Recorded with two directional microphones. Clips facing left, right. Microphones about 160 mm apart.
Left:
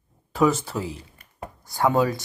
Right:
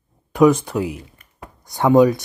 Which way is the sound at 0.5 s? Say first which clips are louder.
Right 7 dB; 15° right (ahead or behind).